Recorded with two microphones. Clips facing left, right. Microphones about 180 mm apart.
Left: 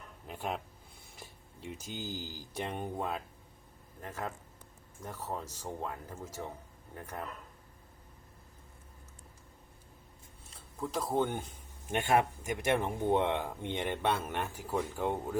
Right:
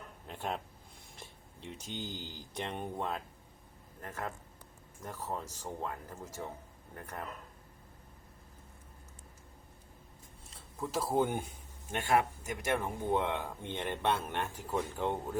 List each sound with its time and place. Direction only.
0.3 s speech: 5° left (ahead or behind)
10.5 s a sound: centre (ahead or behind)
11.9 s speech: 20° left (ahead or behind)